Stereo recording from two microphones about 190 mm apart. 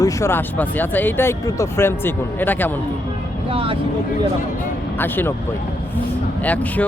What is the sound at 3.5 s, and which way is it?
Speech, 30° right (ahead or behind).